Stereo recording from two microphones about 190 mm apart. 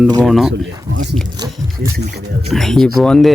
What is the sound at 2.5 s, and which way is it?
Speech, centre (ahead or behind).